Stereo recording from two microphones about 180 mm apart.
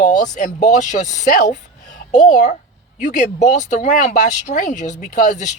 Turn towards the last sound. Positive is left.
turn(degrees=45)  # may be behind; listen again after turning